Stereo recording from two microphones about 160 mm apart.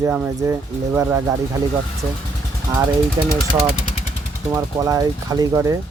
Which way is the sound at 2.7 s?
20° right (ahead or behind).